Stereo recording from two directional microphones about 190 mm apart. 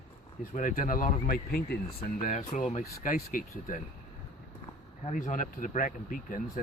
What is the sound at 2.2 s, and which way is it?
Speech, 40° left (ahead or behind).